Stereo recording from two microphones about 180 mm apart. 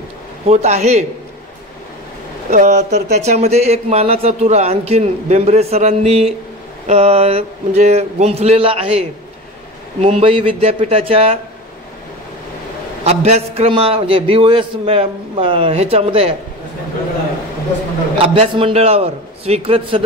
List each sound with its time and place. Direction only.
0.5 s speech: 35° right (ahead or behind)
2.5 s speech: 40° right (ahead or behind)
13.0 s speech: 35° right (ahead or behind)
18.1 s speech: 30° right (ahead or behind)